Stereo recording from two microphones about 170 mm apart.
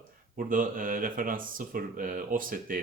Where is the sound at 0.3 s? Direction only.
55° right (ahead or behind).